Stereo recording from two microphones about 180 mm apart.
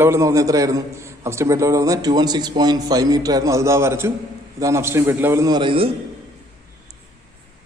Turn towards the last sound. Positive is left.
turn(degrees=-25)  # may be behind; listen again after turning